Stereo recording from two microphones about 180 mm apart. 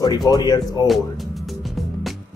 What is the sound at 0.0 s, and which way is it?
Speech, 20° left (ahead or behind).